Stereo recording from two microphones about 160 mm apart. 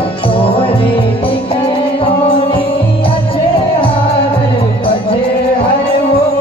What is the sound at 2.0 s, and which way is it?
Music, 35° left (ahead or behind).